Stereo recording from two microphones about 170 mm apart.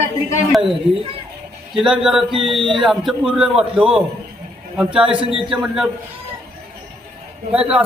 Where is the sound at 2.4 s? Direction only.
30° right (ahead or behind).